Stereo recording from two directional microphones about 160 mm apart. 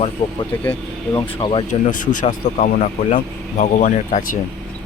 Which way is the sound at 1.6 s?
55° left (ahead or behind).